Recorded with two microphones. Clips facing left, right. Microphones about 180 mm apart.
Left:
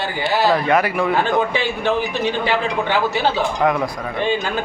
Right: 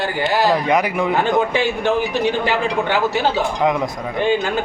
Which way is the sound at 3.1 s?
15° right (ahead or behind).